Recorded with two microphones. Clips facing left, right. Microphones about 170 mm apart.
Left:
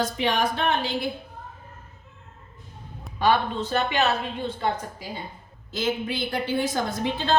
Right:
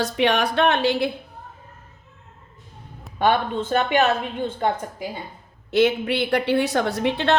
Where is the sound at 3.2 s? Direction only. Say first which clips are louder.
Right 2 dB; 55° right (ahead or behind).